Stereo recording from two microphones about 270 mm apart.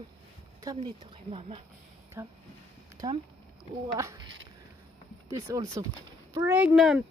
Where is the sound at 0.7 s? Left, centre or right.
Centre.